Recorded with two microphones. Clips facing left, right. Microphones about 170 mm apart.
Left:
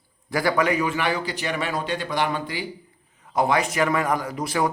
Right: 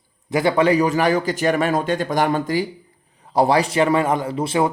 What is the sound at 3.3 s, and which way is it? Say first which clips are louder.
Speech: right 5 dB; 35° right (ahead or behind).